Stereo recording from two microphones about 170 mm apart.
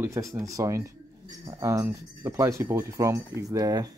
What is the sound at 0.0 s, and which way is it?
Speech, 15° right (ahead or behind).